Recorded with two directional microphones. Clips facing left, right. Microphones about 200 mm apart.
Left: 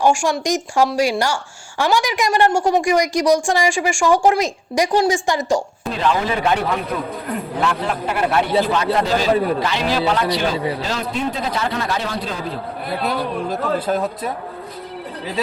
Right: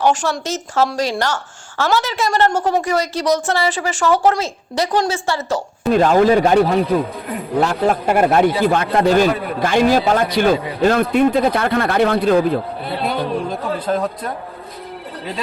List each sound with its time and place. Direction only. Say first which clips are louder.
0.0 s a woman's voice: left 1 dB; 10° left (ahead or behind)
5.9 s a man's voice: right 8 dB; 45° right (ahead or behind)
13.1 s a woman's voice: right 2 dB; 5° left (ahead or behind)